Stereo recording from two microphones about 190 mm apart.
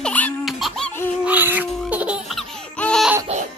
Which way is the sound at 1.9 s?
5° right (ahead or behind).